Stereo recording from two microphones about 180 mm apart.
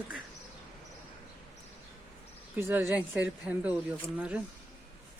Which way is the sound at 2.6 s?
10° right (ahead or behind).